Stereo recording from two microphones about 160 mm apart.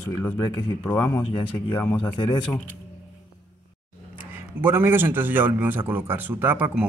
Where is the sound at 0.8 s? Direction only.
15° left (ahead or behind).